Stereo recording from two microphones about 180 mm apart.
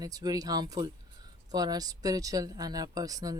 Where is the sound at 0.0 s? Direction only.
20° right (ahead or behind).